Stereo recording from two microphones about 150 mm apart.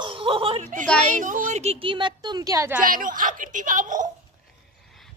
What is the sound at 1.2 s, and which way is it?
A woman's voice, 60° right (ahead or behind).